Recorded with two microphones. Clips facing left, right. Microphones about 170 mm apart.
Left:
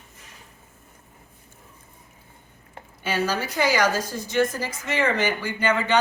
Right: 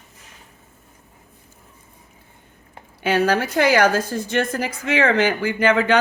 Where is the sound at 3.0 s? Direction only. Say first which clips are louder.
Right 7 dB; 60° right (ahead or behind).